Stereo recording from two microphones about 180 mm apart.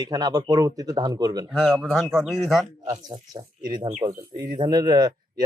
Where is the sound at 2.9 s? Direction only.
20° right (ahead or behind).